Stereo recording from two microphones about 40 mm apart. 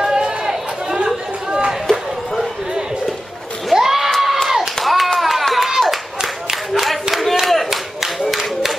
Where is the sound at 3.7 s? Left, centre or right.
Centre.